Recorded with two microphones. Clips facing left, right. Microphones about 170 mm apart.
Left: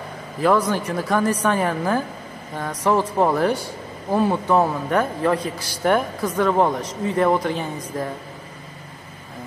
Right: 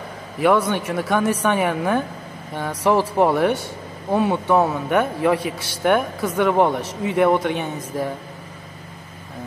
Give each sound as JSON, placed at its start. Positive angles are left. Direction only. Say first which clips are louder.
{"t": 0.4, "sound": "speech", "louder": "right 1 dB", "side_deg": 0}